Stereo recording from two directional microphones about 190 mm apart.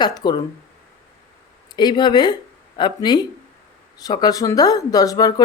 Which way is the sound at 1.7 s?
20° left (ahead or behind).